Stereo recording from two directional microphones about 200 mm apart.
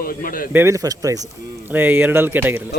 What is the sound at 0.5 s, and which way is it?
A man's voice, 15° right (ahead or behind).